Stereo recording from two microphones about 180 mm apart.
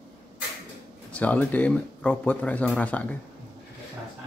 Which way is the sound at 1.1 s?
10° left (ahead or behind).